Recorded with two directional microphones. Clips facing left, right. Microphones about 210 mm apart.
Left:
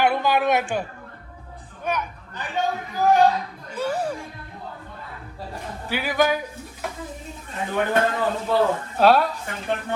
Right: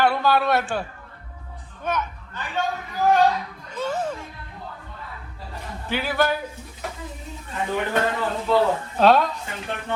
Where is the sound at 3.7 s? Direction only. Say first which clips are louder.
Left 1 dB; 10° left (ahead or behind).